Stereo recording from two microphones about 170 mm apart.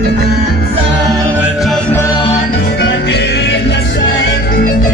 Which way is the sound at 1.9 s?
15° left (ahead or behind).